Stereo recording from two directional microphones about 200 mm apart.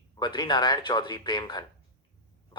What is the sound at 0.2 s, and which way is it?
Speech, 20° left (ahead or behind).